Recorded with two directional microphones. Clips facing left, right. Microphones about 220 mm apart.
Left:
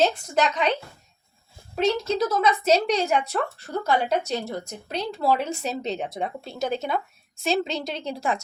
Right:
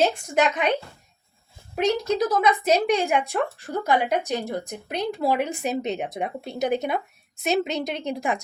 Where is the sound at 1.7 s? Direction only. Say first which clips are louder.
Right 1 dB; 15° right (ahead or behind).